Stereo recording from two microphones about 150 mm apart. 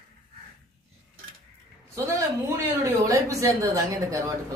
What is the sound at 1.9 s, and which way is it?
A woman's voice, 20° right (ahead or behind).